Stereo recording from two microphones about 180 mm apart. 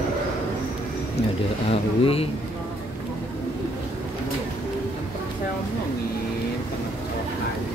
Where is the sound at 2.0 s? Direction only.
35° left (ahead or behind).